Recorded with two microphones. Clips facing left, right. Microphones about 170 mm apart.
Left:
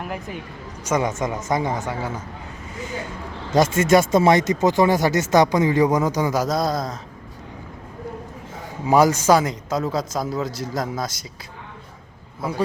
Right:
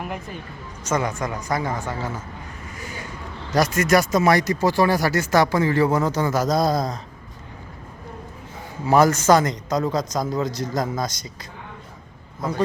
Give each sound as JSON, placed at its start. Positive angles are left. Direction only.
{"t": 0.9, "sound": "speech", "side_deg": 15}
{"t": 3.5, "sound": "speech", "side_deg": 25}
{"t": 6.6, "sound": "speech", "side_deg": 0}
{"t": 8.9, "sound": "speech", "side_deg": 10}
{"t": 12.4, "sound": "a man's voice", "side_deg": 10}